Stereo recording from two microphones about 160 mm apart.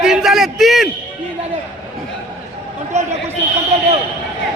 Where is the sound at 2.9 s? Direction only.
45° right (ahead or behind).